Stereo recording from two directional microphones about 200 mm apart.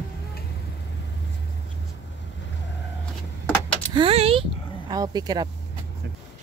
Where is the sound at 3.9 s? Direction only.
30° right (ahead or behind).